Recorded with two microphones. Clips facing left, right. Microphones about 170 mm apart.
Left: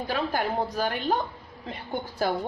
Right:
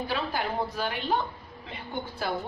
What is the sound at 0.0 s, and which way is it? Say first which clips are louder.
A woman's voice: left 3 dB; 45° left (ahead or behind).